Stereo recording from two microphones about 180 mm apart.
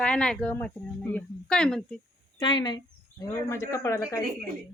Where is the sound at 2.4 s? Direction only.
25° left (ahead or behind).